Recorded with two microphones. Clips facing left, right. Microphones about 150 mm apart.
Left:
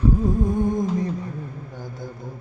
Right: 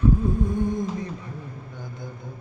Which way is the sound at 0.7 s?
45° left (ahead or behind).